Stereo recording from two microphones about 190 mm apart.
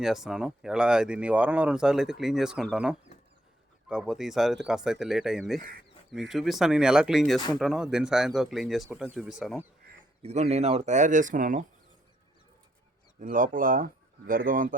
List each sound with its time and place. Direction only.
0.0 s speech: centre (ahead or behind)
10.2 s speech: 35° right (ahead or behind)
13.1 s speech: 45° right (ahead or behind)